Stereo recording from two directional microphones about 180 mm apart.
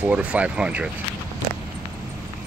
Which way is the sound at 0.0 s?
10° right (ahead or behind).